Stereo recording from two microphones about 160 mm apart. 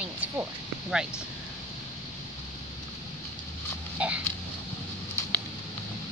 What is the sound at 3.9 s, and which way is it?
Dog, 10° right (ahead or behind).